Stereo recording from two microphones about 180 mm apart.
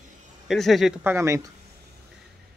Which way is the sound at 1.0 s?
15° right (ahead or behind).